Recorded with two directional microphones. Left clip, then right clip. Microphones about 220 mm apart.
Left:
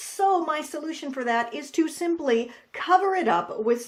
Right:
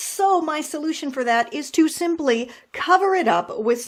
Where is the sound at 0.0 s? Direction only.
45° right (ahead or behind).